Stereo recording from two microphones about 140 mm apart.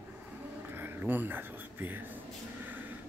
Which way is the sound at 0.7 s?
15° right (ahead or behind).